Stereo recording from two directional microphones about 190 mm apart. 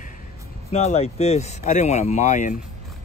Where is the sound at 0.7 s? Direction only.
35° left (ahead or behind).